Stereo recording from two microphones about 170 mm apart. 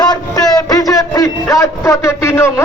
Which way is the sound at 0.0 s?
25° left (ahead or behind).